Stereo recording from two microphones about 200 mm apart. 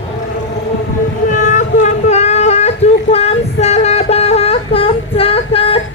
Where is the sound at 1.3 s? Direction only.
35° left (ahead or behind).